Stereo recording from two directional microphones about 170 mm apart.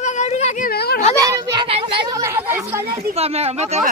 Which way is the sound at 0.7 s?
65° left (ahead or behind).